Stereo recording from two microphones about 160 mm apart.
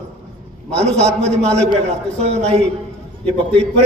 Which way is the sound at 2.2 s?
40° right (ahead or behind).